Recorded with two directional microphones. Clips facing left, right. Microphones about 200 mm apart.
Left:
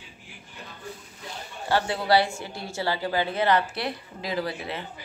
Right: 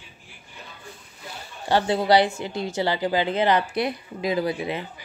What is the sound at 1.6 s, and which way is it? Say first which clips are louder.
A woman's voice: right 4 dB; 20° right (ahead or behind).